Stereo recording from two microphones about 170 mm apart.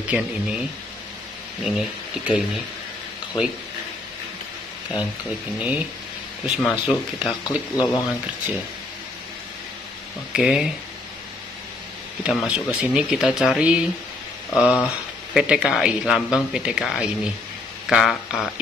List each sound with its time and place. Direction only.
0.0 s a man's voice: 5° right (ahead or behind)
4.9 s speech: 30° left (ahead or behind)
5.6 s a man's voice: 10° right (ahead or behind)
7.7 s speech: 20° left (ahead or behind)
10.3 s a man's voice: 5° right (ahead or behind)
12.2 s a man's voice: 5° right (ahead or behind)